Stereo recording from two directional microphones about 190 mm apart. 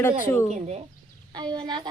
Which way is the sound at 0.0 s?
10° left (ahead or behind).